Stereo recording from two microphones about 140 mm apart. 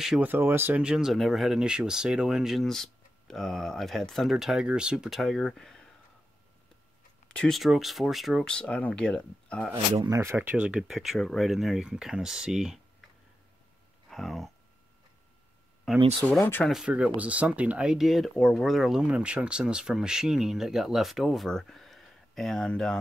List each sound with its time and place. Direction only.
0.0 s speech: 5° right (ahead or behind)
0.3 s speech: 15° right (ahead or behind); by 5.9 s centre (ahead or behind)
7.2 s speech: 5° left (ahead or behind)
10.0 s speech: 25° right (ahead or behind)
10.3 s speech: 10° right (ahead or behind)
14.1 s speech: centre (ahead or behind)
16.0 s speech: 40° right (ahead or behind)
16.3 s speech: 15° left (ahead or behind)
16.6 s speech: 5° right (ahead or behind)